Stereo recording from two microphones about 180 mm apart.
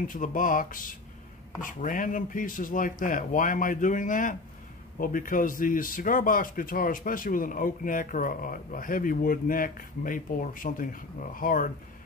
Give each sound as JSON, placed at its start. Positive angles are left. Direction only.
{"t": 0.0, "sound": "speech", "side_deg": 50}